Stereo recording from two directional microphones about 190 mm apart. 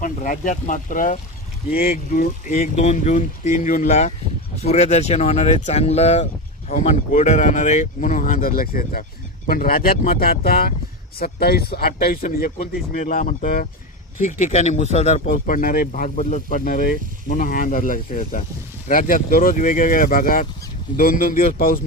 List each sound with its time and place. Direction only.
0.0 s speech: 45° left (ahead or behind)